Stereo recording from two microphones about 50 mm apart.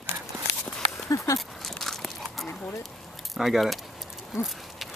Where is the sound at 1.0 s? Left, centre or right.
Left.